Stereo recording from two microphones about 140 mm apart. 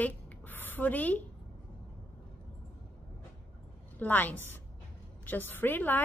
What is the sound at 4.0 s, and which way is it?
A woman's voice, 10° left (ahead or behind).